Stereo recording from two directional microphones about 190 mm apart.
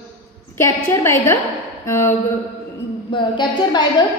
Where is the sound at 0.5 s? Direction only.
15° left (ahead or behind).